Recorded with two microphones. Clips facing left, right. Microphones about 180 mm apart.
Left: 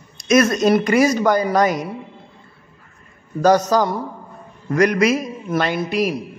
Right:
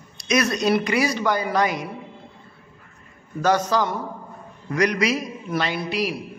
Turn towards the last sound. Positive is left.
turn(degrees=45)  # may be behind; listen again after turning